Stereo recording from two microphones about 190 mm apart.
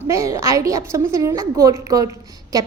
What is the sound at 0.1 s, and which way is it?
A woman's voice, 15° right (ahead or behind).